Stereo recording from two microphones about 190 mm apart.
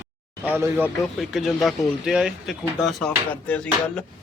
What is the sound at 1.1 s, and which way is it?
Speech, centre (ahead or behind).